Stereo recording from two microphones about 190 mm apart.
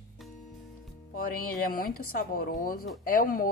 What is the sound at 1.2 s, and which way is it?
A woman's voice, 50° left (ahead or behind).